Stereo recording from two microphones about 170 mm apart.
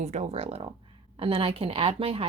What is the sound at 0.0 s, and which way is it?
A woman's voice, 40° right (ahead or behind).